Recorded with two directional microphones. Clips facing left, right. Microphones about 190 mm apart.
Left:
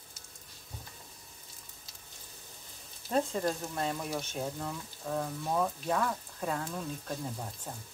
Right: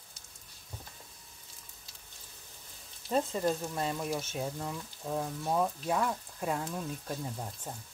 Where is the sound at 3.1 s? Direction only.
Centre (ahead or behind).